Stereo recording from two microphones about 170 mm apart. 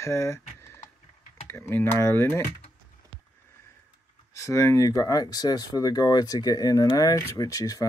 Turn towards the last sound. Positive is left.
turn(degrees=20)  # may be behind; listen again after turning